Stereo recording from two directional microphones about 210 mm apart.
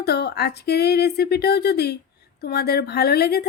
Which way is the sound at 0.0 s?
50° left (ahead or behind).